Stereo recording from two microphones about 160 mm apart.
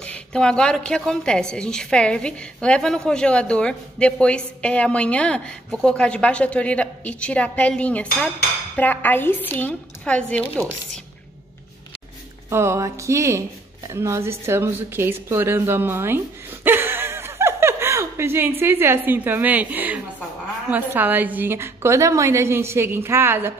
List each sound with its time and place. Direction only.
0.0 s a woman's voice: 5° left (ahead or behind)
12.4 s a woman's voice: 15° right (ahead or behind)
16.6 s chuckle: 15° right (ahead or behind)
18.6 s a woman's voice: 15° right (ahead or behind)